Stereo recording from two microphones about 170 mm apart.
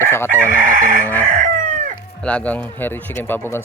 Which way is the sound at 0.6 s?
50° right (ahead or behind).